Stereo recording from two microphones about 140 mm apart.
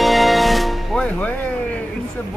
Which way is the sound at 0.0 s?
Centre (ahead or behind).